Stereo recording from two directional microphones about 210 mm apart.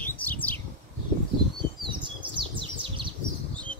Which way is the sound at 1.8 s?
25° right (ahead or behind).